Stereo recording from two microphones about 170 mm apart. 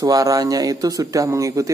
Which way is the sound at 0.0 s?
20° right (ahead or behind).